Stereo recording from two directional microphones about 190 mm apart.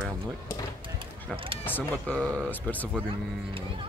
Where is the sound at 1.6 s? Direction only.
10° left (ahead or behind).